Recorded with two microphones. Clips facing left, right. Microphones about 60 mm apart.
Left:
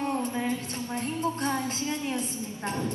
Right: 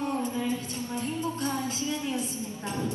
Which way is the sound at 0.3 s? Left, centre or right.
Left.